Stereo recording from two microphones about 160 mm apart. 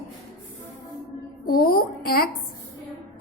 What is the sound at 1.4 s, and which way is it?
Speech, 65° left (ahead or behind).